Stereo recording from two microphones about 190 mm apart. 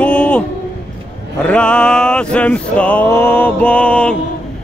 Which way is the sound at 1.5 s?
5° left (ahead or behind).